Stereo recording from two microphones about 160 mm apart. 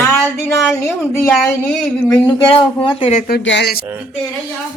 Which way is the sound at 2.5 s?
35° left (ahead or behind).